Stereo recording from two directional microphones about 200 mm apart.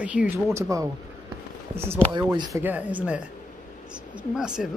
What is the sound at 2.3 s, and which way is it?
Speech, 20° right (ahead or behind).